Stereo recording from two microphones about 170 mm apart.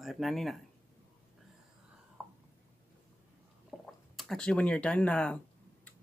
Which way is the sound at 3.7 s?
Centre (ahead or behind).